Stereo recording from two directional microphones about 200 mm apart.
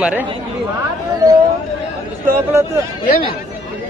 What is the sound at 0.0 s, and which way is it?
Speech, 10° right (ahead or behind).